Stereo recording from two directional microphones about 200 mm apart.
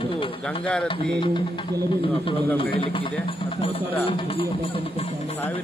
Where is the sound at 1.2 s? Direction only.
25° left (ahead or behind).